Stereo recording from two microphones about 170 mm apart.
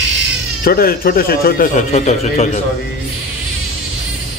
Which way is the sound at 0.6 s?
60° left (ahead or behind).